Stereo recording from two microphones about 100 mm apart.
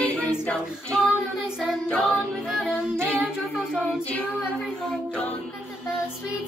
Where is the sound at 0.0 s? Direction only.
15° left (ahead or behind).